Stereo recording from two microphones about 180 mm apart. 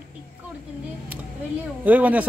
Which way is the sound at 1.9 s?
10° right (ahead or behind).